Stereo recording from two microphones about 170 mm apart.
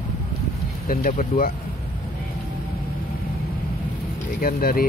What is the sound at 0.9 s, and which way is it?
Speech, 60° left (ahead or behind).